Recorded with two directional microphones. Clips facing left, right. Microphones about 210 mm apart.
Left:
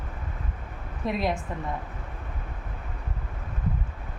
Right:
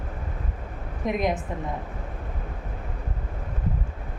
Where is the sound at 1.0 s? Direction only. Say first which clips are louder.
Right 2 dB; 20° right (ahead or behind).